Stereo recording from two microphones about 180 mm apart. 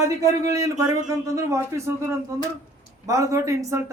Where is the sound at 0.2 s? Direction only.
15° right (ahead or behind).